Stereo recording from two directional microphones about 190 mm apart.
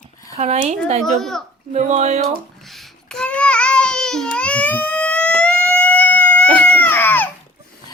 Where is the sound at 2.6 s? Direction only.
Centre (ahead or behind).